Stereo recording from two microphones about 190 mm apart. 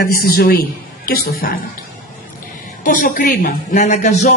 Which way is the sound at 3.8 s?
35° left (ahead or behind).